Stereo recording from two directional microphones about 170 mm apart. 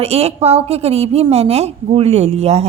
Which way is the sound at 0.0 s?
35° right (ahead or behind).